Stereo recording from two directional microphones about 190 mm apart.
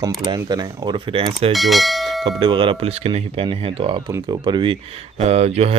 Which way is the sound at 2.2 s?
25° right (ahead or behind).